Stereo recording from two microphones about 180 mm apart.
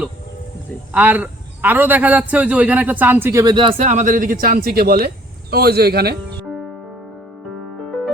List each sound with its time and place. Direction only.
0.9 s a man's voice: 10° right (ahead or behind); by 3.8 s 25° right (ahead or behind)
3.8 s speech: 40° right (ahead or behind); by 6.1 s 60° right (ahead or behind)
7.9 s music: centre (ahead or behind)